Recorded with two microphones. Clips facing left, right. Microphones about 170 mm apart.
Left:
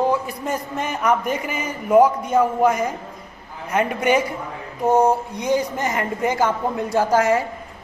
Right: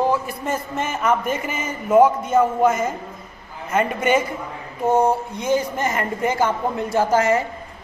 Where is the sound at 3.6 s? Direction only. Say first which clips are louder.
Even; 10° left (ahead or behind).